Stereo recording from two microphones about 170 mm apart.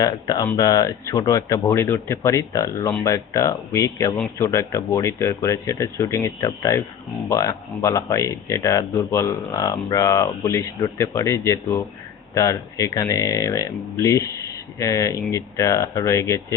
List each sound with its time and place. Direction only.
0.0 s speech: 25° left (ahead or behind)